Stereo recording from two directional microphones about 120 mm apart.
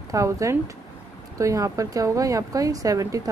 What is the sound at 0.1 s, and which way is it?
A woman's voice, 25° right (ahead or behind).